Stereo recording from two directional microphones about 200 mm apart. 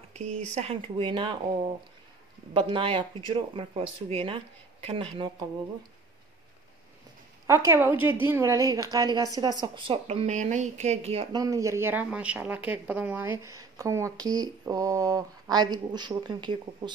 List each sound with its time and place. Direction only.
0.1 s a woman's voice: 35° right (ahead or behind)
2.5 s a woman's voice: 25° right (ahead or behind)
7.4 s a woman's voice: 15° right (ahead or behind); by 11.2 s 30° right (ahead or behind)
11.3 s speech: 15° right (ahead or behind)